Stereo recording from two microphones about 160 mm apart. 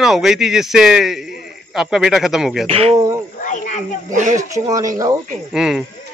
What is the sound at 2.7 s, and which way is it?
Speech, 40° right (ahead or behind).